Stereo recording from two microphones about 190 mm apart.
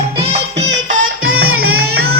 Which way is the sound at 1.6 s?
55° right (ahead or behind).